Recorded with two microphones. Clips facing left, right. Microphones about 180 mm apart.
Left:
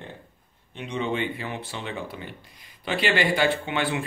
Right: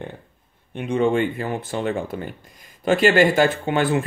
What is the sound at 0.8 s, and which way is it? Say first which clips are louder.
Speech: right 8 dB; 50° right (ahead or behind).